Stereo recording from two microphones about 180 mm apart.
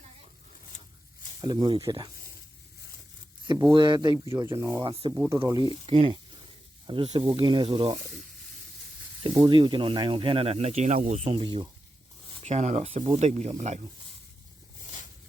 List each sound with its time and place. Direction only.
1.4 s speech: 25° right (ahead or behind)
3.7 s speech: 25° right (ahead or behind)
5.8 s speech: 30° right (ahead or behind)
9.2 s speech: 25° right (ahead or behind)
12.4 s speech: 40° right (ahead or behind)